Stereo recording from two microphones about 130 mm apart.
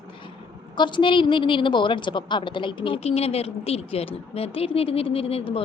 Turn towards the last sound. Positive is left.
turn(degrees=45)  # may be behind; listen again after turning